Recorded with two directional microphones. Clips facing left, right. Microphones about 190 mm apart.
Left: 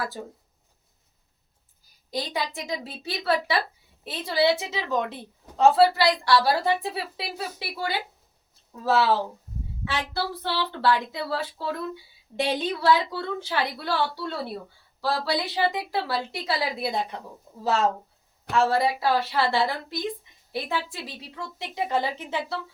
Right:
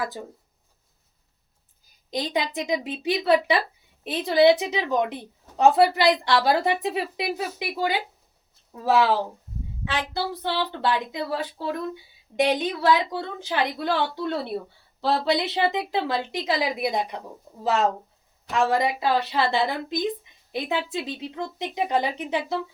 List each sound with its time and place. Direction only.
2.0 s a woman's voice: 20° right (ahead or behind)